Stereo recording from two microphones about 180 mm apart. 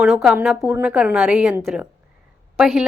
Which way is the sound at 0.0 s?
5° right (ahead or behind).